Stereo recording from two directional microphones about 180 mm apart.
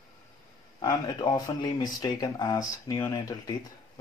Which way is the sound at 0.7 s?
20° left (ahead or behind).